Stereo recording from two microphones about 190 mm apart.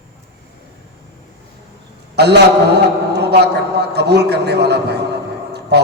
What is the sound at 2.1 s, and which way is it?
A man's voice, 60° right (ahead or behind).